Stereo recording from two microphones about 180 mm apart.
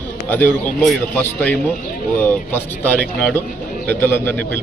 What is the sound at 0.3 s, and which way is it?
A man's voice, 10° left (ahead or behind).